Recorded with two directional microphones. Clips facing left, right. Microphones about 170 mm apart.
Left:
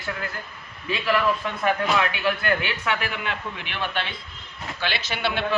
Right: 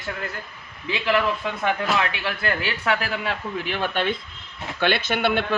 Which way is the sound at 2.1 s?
30° right (ahead or behind).